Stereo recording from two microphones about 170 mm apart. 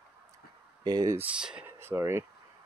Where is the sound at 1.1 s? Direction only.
5° right (ahead or behind).